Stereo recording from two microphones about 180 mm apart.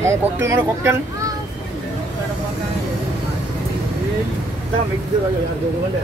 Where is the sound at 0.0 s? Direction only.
15° right (ahead or behind).